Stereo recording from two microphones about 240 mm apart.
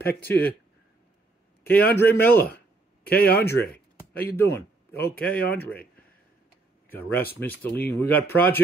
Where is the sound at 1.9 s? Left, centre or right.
Centre.